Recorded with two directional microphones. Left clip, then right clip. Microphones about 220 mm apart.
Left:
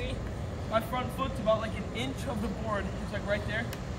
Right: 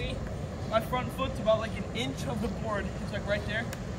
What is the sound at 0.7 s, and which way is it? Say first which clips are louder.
Speech: right 1 dB; 10° left (ahead or behind).